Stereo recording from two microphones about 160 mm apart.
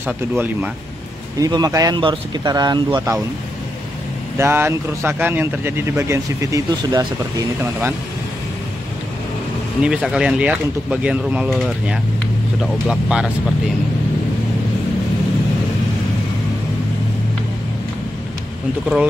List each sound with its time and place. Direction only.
0.0 s speech: 10° right (ahead or behind)
1.4 s speech: 25° right (ahead or behind)
4.4 s speech: 15° right (ahead or behind)
9.8 s speech: 5° right (ahead or behind)